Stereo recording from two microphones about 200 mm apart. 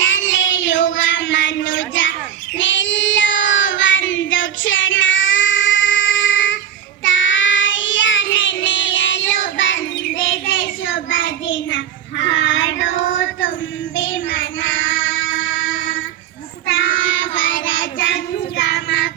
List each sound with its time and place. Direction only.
0.0 s child singing: 70° left (ahead or behind)